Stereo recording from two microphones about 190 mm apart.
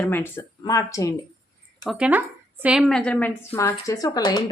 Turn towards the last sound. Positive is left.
turn(degrees=20)  # may be behind; listen again after turning